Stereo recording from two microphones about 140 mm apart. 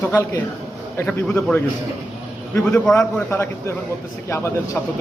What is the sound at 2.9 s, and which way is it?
Speech, 20° left (ahead or behind).